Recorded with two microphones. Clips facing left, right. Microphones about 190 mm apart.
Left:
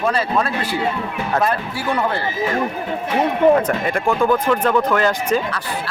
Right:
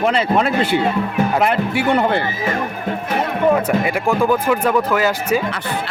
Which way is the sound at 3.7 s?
10° right (ahead or behind).